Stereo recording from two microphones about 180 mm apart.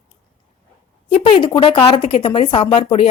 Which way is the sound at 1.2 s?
30° left (ahead or behind).